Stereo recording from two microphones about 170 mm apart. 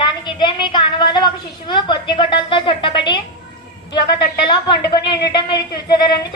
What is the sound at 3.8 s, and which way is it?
Speech, 80° left.